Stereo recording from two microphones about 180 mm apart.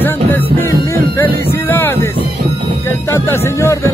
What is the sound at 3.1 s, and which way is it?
Music, 15° left (ahead or behind).